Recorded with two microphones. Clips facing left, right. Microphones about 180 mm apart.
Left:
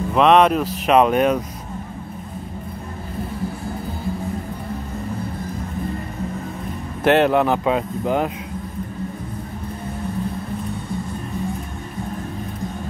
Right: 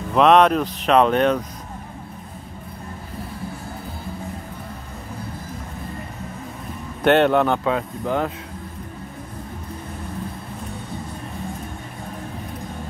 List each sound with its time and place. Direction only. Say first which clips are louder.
0.1 s speech: even; centre (ahead or behind)
7.0 s speech: even; centre (ahead or behind)
7.6 s speech: left 3 dB; 15° left (ahead or behind)